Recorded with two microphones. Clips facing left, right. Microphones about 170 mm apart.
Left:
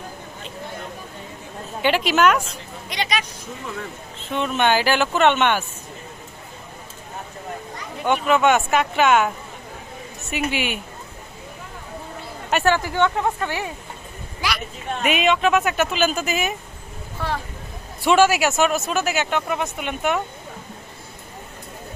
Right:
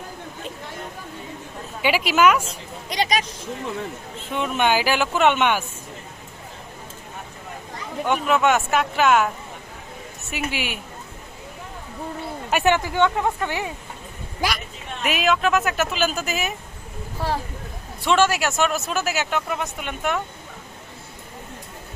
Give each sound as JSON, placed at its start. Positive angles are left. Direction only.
{"t": 1.8, "sound": "speech", "side_deg": -5}
{"t": 2.9, "sound": "speech", "side_deg": -40}
{"t": 4.4, "sound": "speech", "side_deg": -10}
{"t": 8.0, "sound": "speech", "side_deg": 0}
{"t": 10.3, "sound": "speech", "side_deg": 0}
{"t": 12.6, "sound": "speech", "side_deg": -20}
{"t": 14.4, "sound": "speech", "side_deg": -50}
{"t": 15.0, "sound": "speech", "side_deg": 0}
{"t": 17.2, "sound": "speech", "side_deg": -35}
{"t": 18.0, "sound": "speech", "side_deg": 10}